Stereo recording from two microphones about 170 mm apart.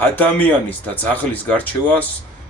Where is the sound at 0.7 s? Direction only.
10° left (ahead or behind).